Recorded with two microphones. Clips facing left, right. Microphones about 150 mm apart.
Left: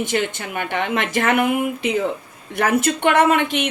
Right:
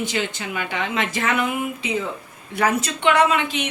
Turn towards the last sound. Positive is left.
turn(degrees=55)  # may be behind; listen again after turning